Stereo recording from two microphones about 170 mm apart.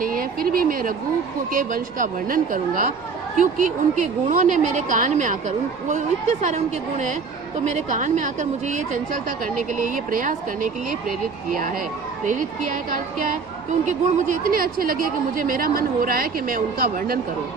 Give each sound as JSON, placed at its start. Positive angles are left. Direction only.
{"t": 0.0, "sound": "a woman's voice", "side_deg": -55}